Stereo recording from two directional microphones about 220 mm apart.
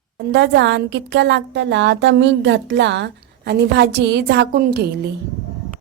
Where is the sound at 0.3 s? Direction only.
50° right (ahead or behind).